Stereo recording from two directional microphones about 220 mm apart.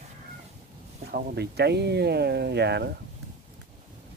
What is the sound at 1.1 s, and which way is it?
Speech, 45° right (ahead or behind).